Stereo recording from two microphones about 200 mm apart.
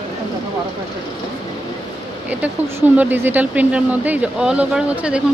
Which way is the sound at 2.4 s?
10° right (ahead or behind).